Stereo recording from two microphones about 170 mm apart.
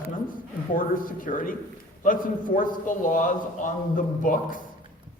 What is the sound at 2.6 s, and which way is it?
A man's voice, 50° left (ahead or behind).